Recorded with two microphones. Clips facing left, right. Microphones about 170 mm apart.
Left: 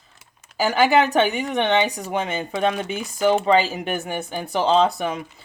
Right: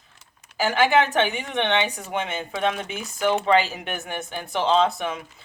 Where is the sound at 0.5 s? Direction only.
40° left (ahead or behind).